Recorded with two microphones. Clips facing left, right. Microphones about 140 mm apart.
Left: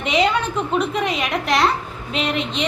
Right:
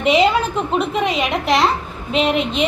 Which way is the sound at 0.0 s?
5° right (ahead or behind).